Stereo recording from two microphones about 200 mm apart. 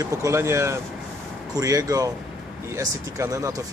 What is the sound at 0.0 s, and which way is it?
Speech, 15° right (ahead or behind).